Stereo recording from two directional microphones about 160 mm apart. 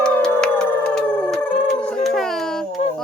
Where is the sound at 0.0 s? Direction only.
10° left (ahead or behind).